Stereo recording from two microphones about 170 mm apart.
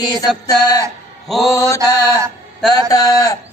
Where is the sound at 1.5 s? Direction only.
20° left (ahead or behind).